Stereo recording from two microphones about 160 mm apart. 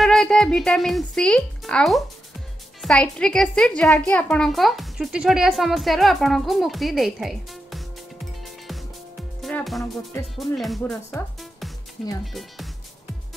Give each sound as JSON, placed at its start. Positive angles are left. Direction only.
{"t": 0.0, "sound": "a woman's voice", "side_deg": 5}
{"t": 12.3, "sound": "a woman's voice", "side_deg": 0}